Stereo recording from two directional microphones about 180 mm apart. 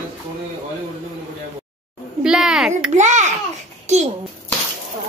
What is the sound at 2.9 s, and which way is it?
A child's voice, 40° right (ahead or behind).